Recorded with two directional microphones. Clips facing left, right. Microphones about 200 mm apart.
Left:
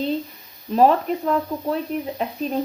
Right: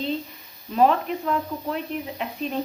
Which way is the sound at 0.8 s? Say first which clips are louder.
Left 3 dB; 35° left (ahead or behind).